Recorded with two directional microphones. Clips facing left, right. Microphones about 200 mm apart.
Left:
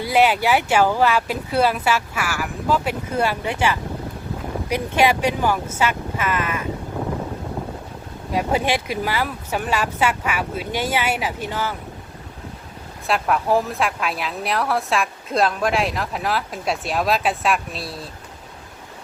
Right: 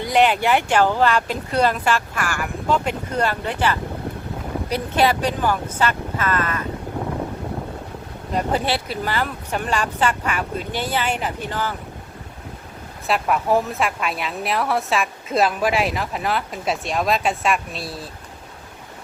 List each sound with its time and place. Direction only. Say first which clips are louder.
0.0 s speech: even; 5° left (ahead or behind)
8.3 s speech: left 1 dB; 10° left (ahead or behind)
13.1 s a woman's voice: even; centre (ahead or behind)